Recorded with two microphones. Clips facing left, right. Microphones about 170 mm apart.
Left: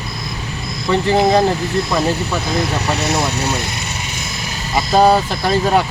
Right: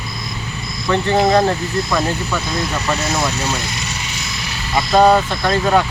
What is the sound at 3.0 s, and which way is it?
Speech, 70° left (ahead or behind).